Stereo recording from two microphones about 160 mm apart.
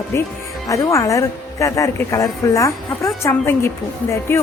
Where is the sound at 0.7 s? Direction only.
20° left (ahead or behind).